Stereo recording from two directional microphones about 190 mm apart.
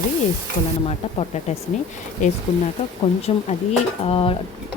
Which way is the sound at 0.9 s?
35° left (ahead or behind).